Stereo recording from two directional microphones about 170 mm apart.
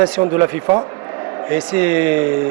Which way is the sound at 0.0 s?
10° right (ahead or behind).